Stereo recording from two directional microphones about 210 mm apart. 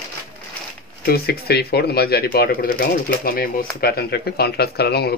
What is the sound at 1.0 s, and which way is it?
Speech, 50° left (ahead or behind).